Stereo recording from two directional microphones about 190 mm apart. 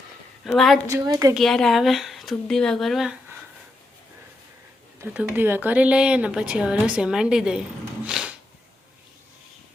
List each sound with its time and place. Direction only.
0.4 s speech: centre (ahead or behind)
0.9 s a woman's voice: 15° right (ahead or behind)
1.3 s speech: centre (ahead or behind)
4.9 s speech: 10° right (ahead or behind)
8.0 s a sound: 5° right (ahead or behind)